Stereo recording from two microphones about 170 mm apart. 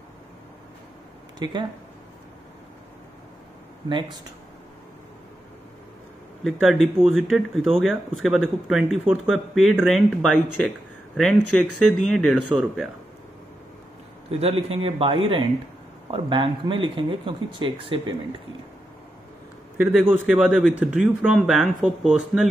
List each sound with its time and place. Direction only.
1.4 s speech: 25° right (ahead or behind)
6.4 s speech: centre (ahead or behind)
14.4 s speech: 35° right (ahead or behind)
19.8 s speech: 10° right (ahead or behind)